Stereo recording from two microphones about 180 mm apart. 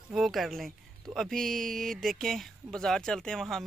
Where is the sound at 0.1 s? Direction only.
Centre (ahead or behind).